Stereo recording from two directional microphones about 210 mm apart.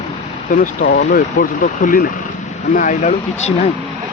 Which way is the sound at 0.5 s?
40° left (ahead or behind).